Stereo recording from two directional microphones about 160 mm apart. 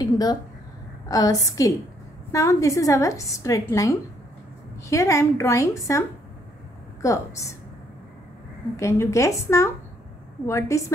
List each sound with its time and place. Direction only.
0.0 s a woman's voice: 25° left (ahead or behind)
8.7 s speech: 20° left (ahead or behind)